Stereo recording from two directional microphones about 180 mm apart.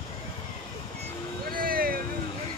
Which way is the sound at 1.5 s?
55° right (ahead or behind).